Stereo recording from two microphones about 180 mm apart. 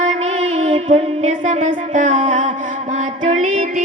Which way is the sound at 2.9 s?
40° right (ahead or behind).